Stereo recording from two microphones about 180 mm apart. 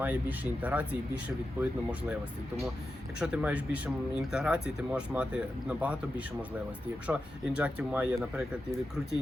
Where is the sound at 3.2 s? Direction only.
5° right (ahead or behind).